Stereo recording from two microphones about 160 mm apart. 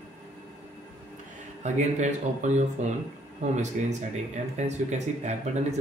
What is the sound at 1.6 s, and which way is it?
A man's voice, 45° right (ahead or behind).